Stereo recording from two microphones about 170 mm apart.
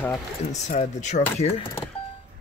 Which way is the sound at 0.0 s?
20° left (ahead or behind).